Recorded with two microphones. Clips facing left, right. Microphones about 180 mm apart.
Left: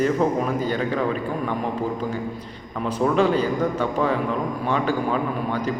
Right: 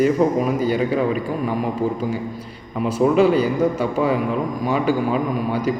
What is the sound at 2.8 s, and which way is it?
A man's voice, 5° right (ahead or behind).